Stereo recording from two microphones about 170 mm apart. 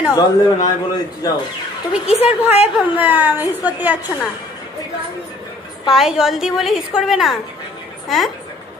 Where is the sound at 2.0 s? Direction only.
40° left (ahead or behind).